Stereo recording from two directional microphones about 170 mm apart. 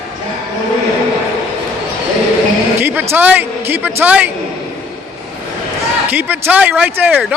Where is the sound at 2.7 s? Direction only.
10° right (ahead or behind).